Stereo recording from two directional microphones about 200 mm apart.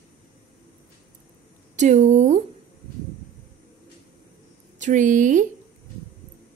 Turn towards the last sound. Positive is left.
turn(degrees=-40)  # may be behind; listen again after turning